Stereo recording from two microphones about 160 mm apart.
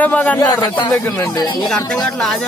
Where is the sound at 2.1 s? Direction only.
Centre (ahead or behind).